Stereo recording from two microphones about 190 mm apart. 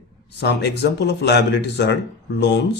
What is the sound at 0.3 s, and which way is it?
A man's voice, 60° left (ahead or behind).